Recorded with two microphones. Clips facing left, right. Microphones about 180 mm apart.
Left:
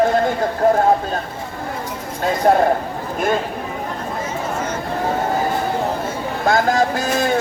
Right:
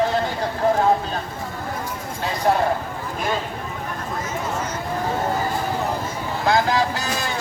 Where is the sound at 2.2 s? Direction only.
50° left (ahead or behind).